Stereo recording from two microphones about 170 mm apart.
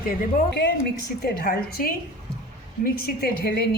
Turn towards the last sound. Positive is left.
turn(degrees=65)  # may be behind; listen again after turning